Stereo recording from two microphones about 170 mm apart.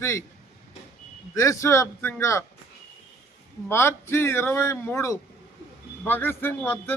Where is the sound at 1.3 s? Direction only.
20° left (ahead or behind).